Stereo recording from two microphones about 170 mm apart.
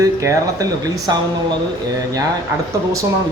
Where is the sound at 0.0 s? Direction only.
20° right (ahead or behind).